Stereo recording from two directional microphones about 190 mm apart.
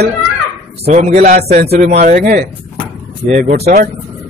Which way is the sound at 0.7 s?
35° right (ahead or behind).